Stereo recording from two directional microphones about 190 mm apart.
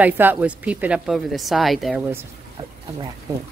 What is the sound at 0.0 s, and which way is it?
A woman's voice, 10° right (ahead or behind).